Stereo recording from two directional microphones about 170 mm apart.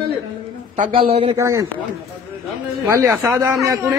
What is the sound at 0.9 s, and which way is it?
Speech, 35° right (ahead or behind).